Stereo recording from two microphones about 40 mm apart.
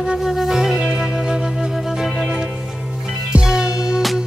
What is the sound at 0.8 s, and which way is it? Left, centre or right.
Music, right.